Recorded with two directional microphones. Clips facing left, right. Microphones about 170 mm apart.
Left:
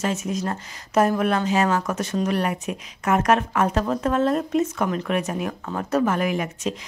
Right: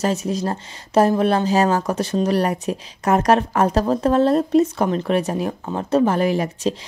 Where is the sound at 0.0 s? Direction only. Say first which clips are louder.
Right 4 dB; 35° right (ahead or behind).